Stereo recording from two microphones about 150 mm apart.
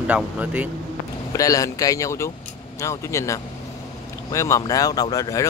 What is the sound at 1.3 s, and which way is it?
Speech, 25° left (ahead or behind).